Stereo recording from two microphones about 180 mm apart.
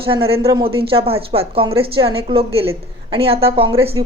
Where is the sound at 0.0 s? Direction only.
30° right (ahead or behind).